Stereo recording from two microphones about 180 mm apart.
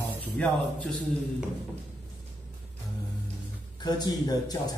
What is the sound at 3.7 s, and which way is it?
Speech, 25° left (ahead or behind).